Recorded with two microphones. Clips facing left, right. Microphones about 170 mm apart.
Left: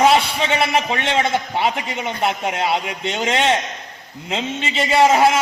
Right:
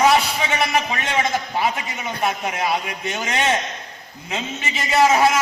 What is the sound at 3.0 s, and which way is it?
Speech, 25° left (ahead or behind).